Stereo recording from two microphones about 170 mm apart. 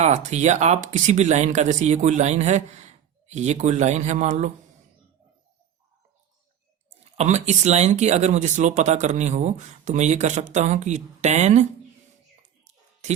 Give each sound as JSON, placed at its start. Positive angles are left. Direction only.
{"t": 0.0, "sound": "speech", "side_deg": -40}
{"t": 7.0, "sound": "speech", "side_deg": -40}